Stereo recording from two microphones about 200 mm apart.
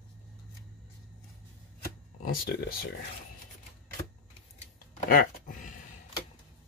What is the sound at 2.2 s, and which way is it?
Speech, 45° left (ahead or behind).